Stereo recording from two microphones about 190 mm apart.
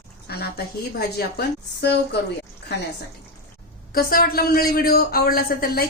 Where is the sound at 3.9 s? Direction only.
50° left (ahead or behind).